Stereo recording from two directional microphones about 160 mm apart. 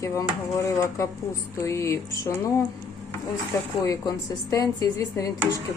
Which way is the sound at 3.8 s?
20° left (ahead or behind).